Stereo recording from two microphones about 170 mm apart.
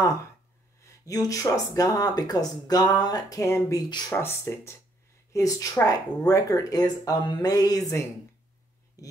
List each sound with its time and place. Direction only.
1.0 s speech: 20° left (ahead or behind)